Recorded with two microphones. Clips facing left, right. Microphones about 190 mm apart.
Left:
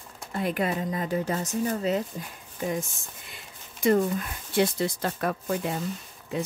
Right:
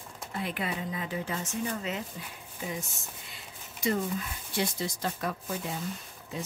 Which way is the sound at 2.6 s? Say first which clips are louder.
Left 7 dB; 50° left (ahead or behind).